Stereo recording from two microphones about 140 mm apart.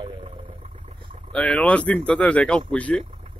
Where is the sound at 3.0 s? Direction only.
60° right (ahead or behind).